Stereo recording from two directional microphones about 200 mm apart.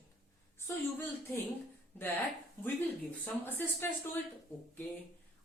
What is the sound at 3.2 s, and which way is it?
Speech, 10° left (ahead or behind).